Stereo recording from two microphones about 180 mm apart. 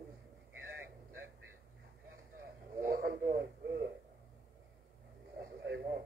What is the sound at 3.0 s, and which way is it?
Speech, 55° right (ahead or behind).